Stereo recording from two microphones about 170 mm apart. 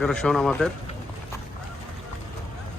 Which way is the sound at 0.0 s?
5° left (ahead or behind).